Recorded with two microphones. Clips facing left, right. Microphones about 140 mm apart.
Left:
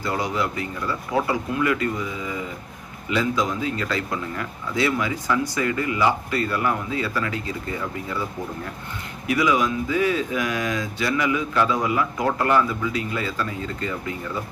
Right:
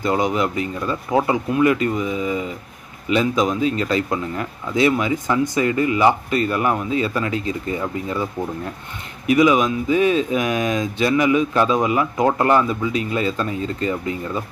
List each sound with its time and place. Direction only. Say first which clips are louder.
0.0 s speech: right 5 dB; 20° right (ahead or behind)
9.2 s speech: right 6 dB; 20° right (ahead or behind)